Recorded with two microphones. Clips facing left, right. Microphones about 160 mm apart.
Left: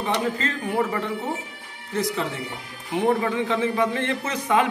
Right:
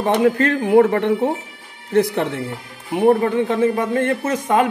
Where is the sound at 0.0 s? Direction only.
55° right (ahead or behind).